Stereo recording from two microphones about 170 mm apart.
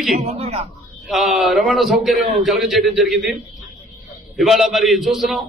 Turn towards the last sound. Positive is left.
turn(degrees=0)  # may be behind; listen again after turning